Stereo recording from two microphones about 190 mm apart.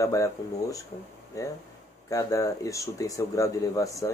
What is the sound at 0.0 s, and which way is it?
Speech, 15° left (ahead or behind).